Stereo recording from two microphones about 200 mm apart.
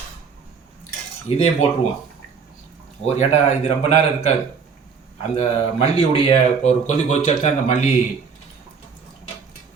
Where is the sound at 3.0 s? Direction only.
35° left (ahead or behind).